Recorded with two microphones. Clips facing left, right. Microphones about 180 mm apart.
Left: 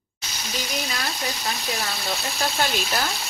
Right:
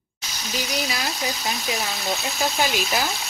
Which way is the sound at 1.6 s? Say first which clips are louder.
Right 1 dB; centre (ahead or behind).